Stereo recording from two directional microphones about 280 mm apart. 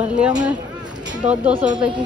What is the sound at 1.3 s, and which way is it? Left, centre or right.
Speech, centre.